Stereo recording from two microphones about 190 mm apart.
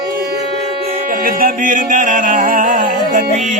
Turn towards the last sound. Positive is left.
turn(degrees=-40)  # may be behind; listen again after turning